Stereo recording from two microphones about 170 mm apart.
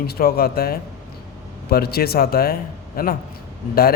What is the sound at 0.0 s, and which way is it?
A man's voice, 65° left (ahead or behind).